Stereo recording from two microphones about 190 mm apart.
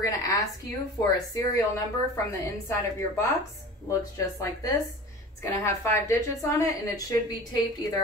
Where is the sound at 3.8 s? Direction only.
15° left (ahead or behind).